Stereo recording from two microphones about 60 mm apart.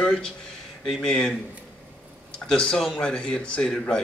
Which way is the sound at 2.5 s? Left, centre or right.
Centre.